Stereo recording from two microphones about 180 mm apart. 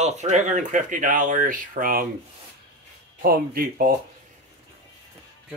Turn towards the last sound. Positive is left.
turn(degrees=-55)  # may be behind; listen again after turning